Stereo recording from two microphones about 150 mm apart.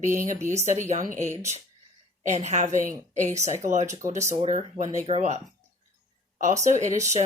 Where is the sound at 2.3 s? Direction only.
50° right (ahead or behind).